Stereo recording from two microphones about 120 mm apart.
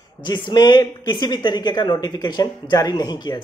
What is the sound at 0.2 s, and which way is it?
A man's voice, 35° left (ahead or behind).